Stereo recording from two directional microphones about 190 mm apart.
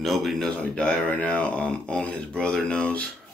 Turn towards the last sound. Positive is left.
turn(degrees=5)  # may be behind; listen again after turning